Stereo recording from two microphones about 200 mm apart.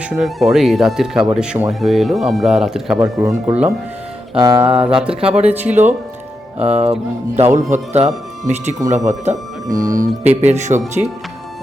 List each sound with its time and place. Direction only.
0.2 s speech: centre (ahead or behind)
3.0 s speech: 15° right (ahead or behind)
4.4 s music: 20° right (ahead or behind)
5.0 s speech: 5° right (ahead or behind)
6.6 s speech: 30° right (ahead or behind)